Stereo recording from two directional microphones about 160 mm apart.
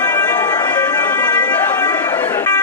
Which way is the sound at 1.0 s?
10° left (ahead or behind).